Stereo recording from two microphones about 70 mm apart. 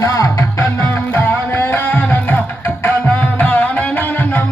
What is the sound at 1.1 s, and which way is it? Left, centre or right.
Music, left.